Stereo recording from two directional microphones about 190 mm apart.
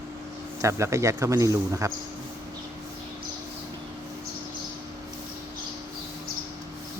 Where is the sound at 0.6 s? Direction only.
15° right (ahead or behind).